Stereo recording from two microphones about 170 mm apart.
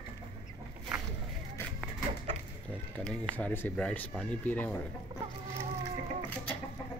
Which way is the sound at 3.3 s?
10° left (ahead or behind).